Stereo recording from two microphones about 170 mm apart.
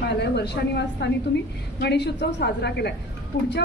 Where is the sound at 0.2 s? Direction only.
85° left.